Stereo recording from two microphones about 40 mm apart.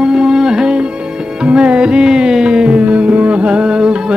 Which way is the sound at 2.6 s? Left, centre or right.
Right.